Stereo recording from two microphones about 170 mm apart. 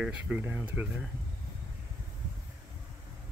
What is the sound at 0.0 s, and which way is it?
Speech, 5° right (ahead or behind).